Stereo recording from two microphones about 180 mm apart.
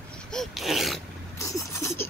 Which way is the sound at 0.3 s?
Centre (ahead or behind).